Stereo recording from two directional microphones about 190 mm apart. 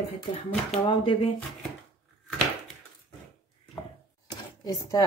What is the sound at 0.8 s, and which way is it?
Speech, 25° left (ahead or behind).